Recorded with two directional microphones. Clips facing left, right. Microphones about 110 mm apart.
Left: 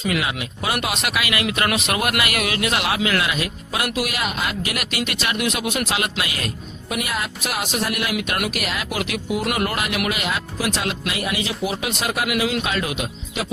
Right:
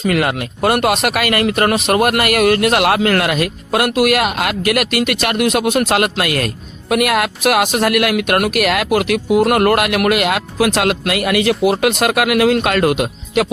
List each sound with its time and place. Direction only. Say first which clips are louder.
0.0 s speech: right 7 dB; 55° right (ahead or behind)